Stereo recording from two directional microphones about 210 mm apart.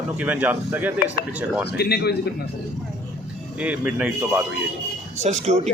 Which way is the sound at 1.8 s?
50° left (ahead or behind).